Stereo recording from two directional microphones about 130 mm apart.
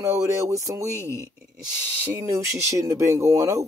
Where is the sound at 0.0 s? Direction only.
25° right (ahead or behind).